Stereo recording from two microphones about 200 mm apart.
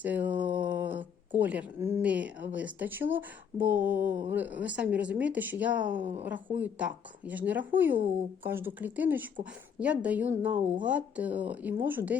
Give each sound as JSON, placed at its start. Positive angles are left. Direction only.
{"t": 0.0, "sound": "mantra", "side_deg": -10}
{"t": 0.7, "sound": "a woman's voice", "side_deg": -10}
{"t": 6.0, "sound": "a woman's voice", "side_deg": -30}
{"t": 6.2, "sound": "a woman's voice", "side_deg": -10}